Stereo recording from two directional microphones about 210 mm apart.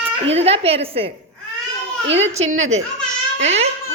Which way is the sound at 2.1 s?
60° right (ahead or behind).